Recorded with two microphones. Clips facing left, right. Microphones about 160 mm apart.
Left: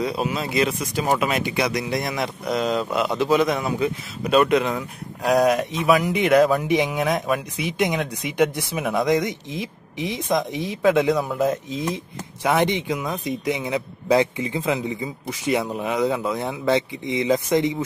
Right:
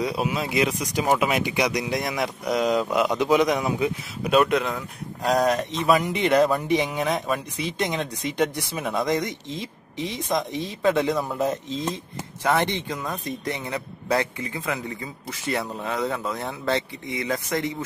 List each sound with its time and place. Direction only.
0.0 s a man's voice: 10° right (ahead or behind); by 10.8 s 15° left (ahead or behind)
10.8 s a man's voice: centre (ahead or behind)
11.7 s a man's voice: 15° left (ahead or behind)